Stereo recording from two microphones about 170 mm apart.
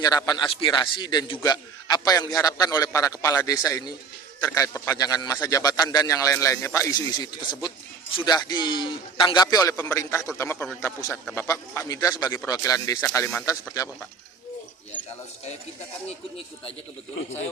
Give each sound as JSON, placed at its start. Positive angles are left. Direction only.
{"t": 0.0, "sound": "a man's voice", "side_deg": 20}
{"t": 9.7, "sound": "a man's voice", "side_deg": 10}